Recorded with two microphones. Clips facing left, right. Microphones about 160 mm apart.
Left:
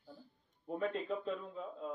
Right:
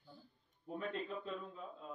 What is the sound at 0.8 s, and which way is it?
A man's voice, 80° left.